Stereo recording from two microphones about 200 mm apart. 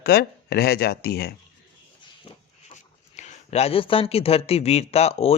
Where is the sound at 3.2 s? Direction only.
35° left (ahead or behind).